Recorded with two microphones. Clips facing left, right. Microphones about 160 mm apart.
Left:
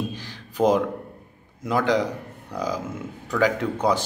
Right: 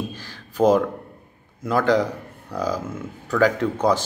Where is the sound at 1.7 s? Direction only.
15° left (ahead or behind).